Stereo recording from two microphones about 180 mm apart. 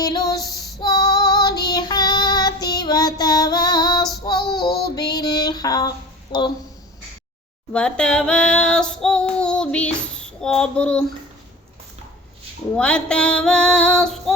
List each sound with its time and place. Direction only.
0.0 s female singing: 20° left (ahead or behind)
0.8 s child singing: 25° left (ahead or behind)
4.9 s female singing: 20° left (ahead or behind)
6.3 s speech: 25° left (ahead or behind)
7.7 s female singing: 5° left (ahead or behind)
12.7 s female singing: 5° left (ahead or behind)